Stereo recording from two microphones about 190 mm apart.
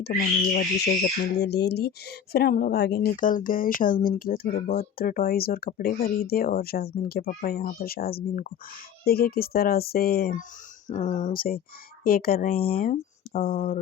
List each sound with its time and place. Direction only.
0.0 s speech: 50° left (ahead or behind)
10.8 s speech: 40° left (ahead or behind)